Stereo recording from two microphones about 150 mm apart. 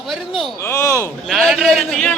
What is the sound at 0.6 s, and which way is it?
Speech, 20° left (ahead or behind).